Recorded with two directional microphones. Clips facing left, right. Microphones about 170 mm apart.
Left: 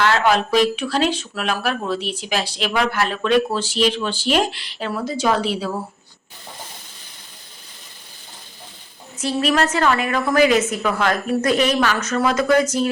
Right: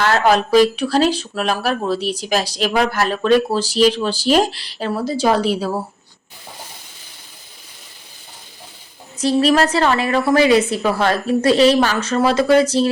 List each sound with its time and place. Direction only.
0.0 s speech: 40° right (ahead or behind)
9.1 s speech: 35° right (ahead or behind)